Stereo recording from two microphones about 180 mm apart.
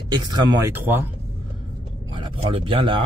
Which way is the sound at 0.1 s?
25° right (ahead or behind).